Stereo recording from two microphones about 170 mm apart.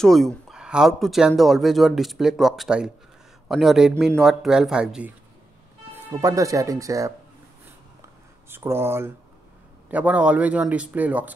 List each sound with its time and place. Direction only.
0.0 s speech: centre (ahead or behind)
6.0 s speech: 20° right (ahead or behind)
8.5 s a man's voice: 15° right (ahead or behind)